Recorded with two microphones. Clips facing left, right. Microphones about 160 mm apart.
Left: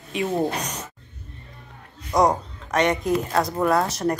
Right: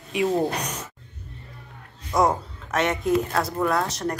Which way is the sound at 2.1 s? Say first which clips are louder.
Left 2 dB; 20° left (ahead or behind).